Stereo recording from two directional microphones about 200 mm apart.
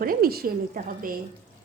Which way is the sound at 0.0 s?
45° right (ahead or behind).